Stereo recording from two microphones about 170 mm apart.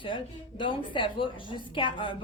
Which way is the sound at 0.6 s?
30° left (ahead or behind).